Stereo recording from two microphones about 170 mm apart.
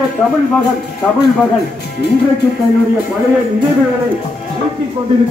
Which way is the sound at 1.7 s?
75° left (ahead or behind).